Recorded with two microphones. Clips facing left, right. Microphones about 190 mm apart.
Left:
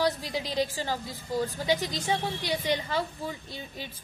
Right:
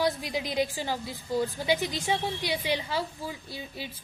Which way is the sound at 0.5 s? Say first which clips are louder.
Even; 10° right (ahead or behind).